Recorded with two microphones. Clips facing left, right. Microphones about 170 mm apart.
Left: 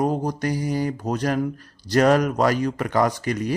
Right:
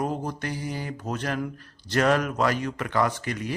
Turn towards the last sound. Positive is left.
turn(degrees=40)  # may be behind; listen again after turning